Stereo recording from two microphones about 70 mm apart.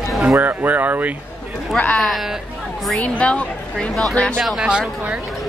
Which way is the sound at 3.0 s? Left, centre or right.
Centre.